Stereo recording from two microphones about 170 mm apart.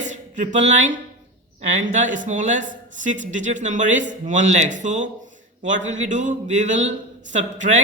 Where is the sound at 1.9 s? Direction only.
45° right (ahead or behind).